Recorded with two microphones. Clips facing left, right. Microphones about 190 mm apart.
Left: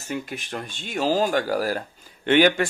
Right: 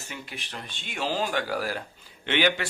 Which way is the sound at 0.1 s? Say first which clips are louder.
Left 11 dB; 45° left (ahead or behind).